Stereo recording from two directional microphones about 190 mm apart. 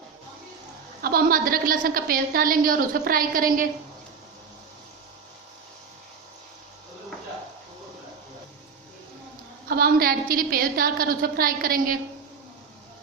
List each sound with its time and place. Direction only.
1.0 s a woman's voice: 50° right (ahead or behind)
9.6 s a woman's voice: 50° right (ahead or behind)